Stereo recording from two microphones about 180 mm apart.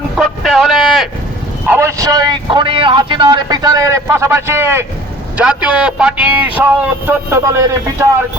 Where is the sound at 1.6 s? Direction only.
15° right (ahead or behind).